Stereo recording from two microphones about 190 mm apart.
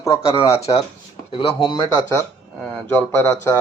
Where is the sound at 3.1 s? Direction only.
15° left (ahead or behind).